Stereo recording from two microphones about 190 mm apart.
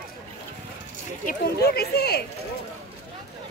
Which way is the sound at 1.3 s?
55° left (ahead or behind).